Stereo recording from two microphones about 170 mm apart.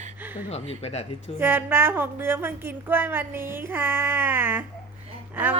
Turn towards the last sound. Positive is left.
turn(degrees=-10)  # may be behind; listen again after turning